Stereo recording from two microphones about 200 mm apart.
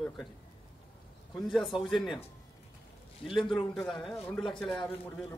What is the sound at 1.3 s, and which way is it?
Speech, centre (ahead or behind).